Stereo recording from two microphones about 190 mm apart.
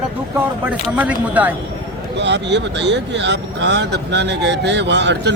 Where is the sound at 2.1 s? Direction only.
65° right (ahead or behind).